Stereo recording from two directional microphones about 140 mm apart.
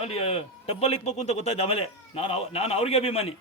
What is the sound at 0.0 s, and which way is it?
A man's voice, 45° left (ahead or behind).